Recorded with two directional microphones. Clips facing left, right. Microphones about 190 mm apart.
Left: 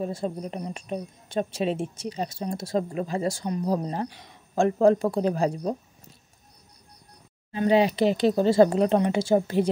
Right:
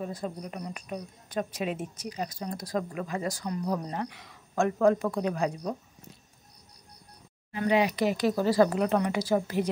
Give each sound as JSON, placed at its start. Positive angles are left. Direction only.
{"t": 0.0, "sound": "a woman's voice", "side_deg": 25}
{"t": 7.5, "sound": "a woman's voice", "side_deg": 30}